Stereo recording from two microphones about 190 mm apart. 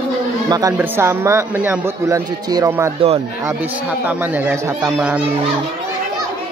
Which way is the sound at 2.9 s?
30° right (ahead or behind).